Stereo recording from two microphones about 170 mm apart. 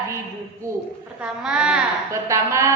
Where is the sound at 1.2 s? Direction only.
5° right (ahead or behind).